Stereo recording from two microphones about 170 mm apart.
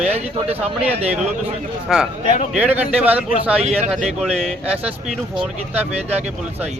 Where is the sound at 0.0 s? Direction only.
40° right (ahead or behind).